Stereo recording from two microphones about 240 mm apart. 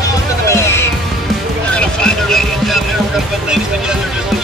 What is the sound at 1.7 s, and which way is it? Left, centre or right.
Music, centre.